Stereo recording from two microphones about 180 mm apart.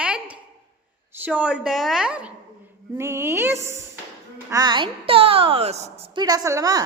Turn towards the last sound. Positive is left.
turn(degrees=-20)  # may be behind; listen again after turning